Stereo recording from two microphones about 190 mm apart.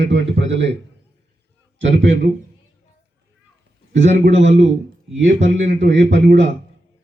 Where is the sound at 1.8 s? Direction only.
75° right (ahead or behind).